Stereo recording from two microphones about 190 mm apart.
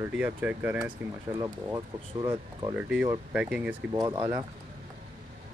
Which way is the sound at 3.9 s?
20° right (ahead or behind).